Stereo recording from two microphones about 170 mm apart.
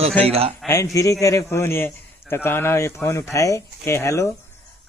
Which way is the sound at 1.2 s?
15° left (ahead or behind).